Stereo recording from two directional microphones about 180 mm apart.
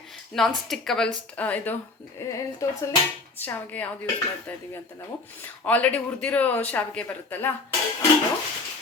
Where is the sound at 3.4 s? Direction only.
10° left (ahead or behind).